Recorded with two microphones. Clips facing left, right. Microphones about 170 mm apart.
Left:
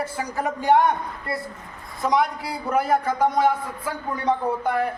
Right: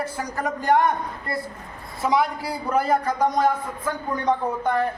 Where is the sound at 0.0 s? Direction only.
5° left (ahead or behind).